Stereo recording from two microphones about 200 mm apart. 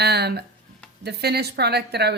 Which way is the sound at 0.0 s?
55° right (ahead or behind).